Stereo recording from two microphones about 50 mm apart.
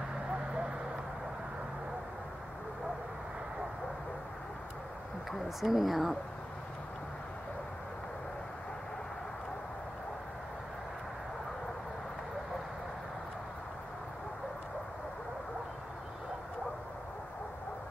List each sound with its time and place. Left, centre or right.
5.6 s speech: centre